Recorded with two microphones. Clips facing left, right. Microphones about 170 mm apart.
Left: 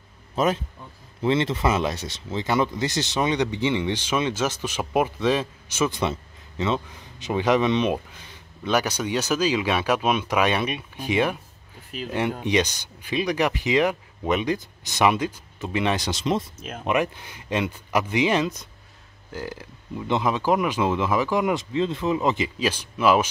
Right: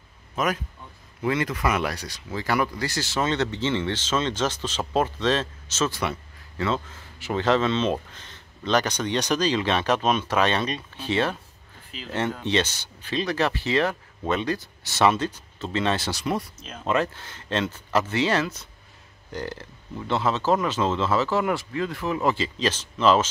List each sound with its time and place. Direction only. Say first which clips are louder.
0.4 s a man's voice: left 4 dB; 30° left (ahead or behind)
16.5 s speech: left 5 dB; 55° left (ahead or behind)
16.8 s speech: left 1 dB; 15° left (ahead or behind)